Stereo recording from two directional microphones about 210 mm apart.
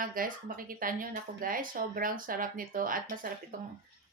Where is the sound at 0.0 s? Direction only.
40° right (ahead or behind).